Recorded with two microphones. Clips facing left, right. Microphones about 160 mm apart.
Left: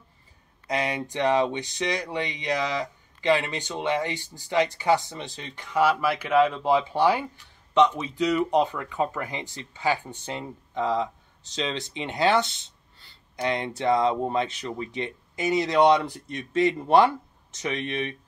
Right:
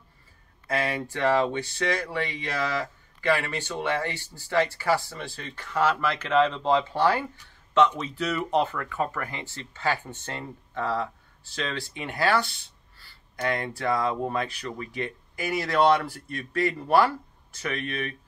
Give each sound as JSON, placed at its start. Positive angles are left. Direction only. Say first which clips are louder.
{"t": 0.7, "sound": "speech", "louder": "even", "side_deg": 20}